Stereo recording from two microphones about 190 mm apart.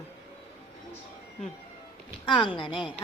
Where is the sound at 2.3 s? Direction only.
25° left (ahead or behind).